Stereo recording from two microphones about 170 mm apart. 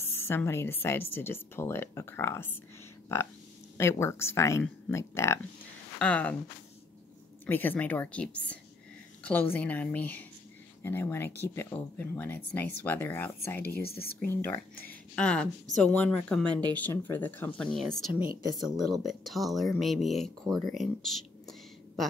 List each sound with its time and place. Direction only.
0.0 s speech: 15° left (ahead or behind)
3.7 s speech: 15° left (ahead or behind)
7.4 s speech: 10° left (ahead or behind)
13.7 s speech: 65° left (ahead or behind)
14.9 s speech: 5° left (ahead or behind)